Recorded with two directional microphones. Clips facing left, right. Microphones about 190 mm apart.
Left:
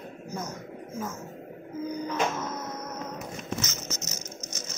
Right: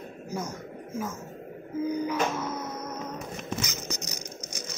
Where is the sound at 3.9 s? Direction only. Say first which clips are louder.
Right 1 dB; 15° right (ahead or behind).